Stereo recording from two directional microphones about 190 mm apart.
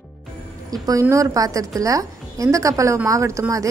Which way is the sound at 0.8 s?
15° right (ahead or behind).